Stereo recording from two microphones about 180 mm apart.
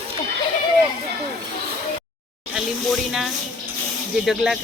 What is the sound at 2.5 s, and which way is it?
Speech, 5° right (ahead or behind).